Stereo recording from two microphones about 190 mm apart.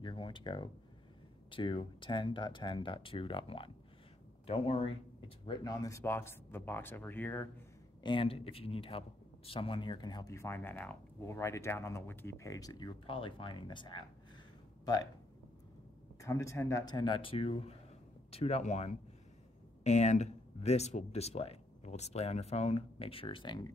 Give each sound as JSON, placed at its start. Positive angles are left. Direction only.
{"t": 0.0, "sound": "speech", "side_deg": 25}
{"t": 8.0, "sound": "speech", "side_deg": 25}
{"t": 16.2, "sound": "speech", "side_deg": 15}